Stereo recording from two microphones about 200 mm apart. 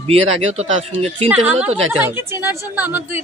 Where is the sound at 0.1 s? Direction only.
30° right (ahead or behind).